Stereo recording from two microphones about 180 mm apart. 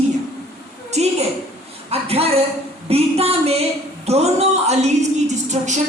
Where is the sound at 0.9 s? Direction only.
40° right (ahead or behind).